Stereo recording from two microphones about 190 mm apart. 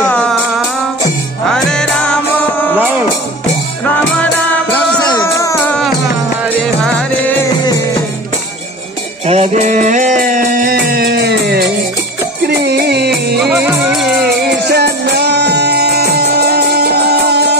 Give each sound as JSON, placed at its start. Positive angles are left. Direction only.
{"t": 0.1, "sound": "music", "side_deg": 5}
{"t": 1.5, "sound": "music", "side_deg": 5}
{"t": 5.0, "sound": "music", "side_deg": 20}
{"t": 6.4, "sound": "music", "side_deg": 0}
{"t": 9.2, "sound": "music", "side_deg": -35}
{"t": 13.6, "sound": "music", "side_deg": -10}
{"t": 14.2, "sound": "music", "side_deg": -60}